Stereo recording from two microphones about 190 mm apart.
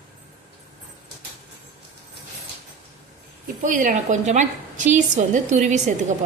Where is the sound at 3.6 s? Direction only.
45° right (ahead or behind).